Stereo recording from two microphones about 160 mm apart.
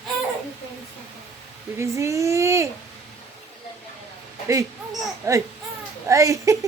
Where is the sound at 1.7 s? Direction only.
20° right (ahead or behind).